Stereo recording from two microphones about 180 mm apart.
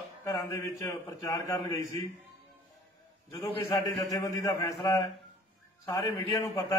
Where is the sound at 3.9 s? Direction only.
20° left (ahead or behind).